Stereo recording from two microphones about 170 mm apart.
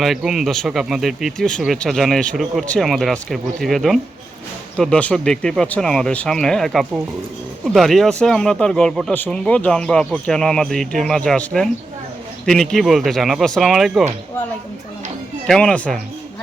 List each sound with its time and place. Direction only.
0.0 s speech: centre (ahead or behind)
15.4 s speech: 5° left (ahead or behind)